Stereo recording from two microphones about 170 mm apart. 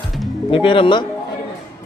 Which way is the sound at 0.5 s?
30° left (ahead or behind).